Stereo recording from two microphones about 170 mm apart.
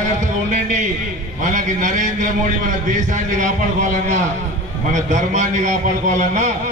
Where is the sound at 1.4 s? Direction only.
45° right (ahead or behind).